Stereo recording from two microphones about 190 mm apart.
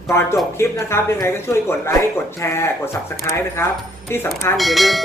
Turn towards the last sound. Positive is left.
turn(degrees=0)  # may be behind; listen again after turning